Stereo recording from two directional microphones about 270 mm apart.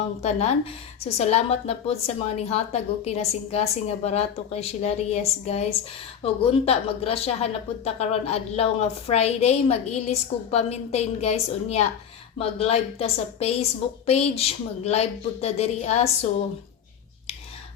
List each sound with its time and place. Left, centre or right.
0.2 s speech: left